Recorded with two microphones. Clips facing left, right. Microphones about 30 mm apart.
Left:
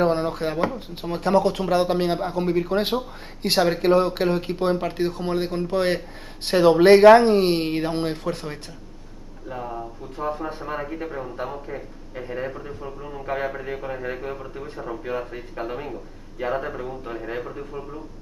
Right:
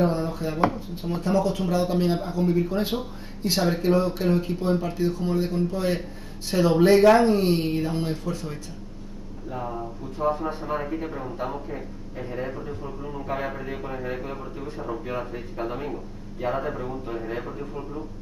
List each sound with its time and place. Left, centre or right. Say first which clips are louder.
0.0 s speech: left 3 dB; left
9.6 s a man's voice: even; centre
15.6 s a man's voice: even; centre